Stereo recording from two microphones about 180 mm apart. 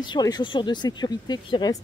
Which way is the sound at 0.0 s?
25° left (ahead or behind).